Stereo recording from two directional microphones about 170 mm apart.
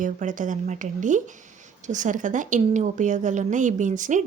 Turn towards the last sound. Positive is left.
turn(degrees=-45)  # may be behind; listen again after turning